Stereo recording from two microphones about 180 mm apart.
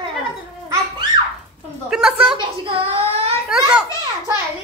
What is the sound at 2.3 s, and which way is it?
Child singing, 30° right (ahead or behind).